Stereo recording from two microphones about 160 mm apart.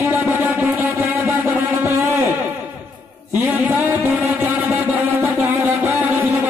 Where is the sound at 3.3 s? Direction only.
15° right (ahead or behind).